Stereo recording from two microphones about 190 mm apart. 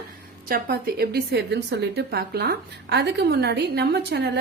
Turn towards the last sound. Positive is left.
turn(degrees=-60)  # may be behind; listen again after turning